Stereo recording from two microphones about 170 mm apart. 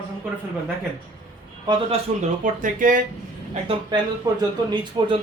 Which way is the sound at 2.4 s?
50° right (ahead or behind).